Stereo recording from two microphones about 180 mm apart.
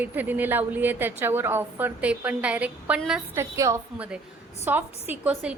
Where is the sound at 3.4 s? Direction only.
15° right (ahead or behind).